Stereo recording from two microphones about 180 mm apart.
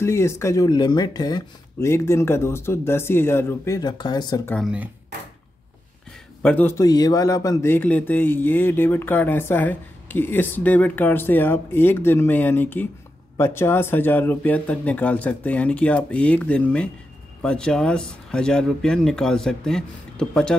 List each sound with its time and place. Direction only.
0.0 s speech: 15° left (ahead or behind)
6.4 s speech: 10° left (ahead or behind)
6.8 s speech: 20° left (ahead or behind); by 20.5 s 5° left (ahead or behind)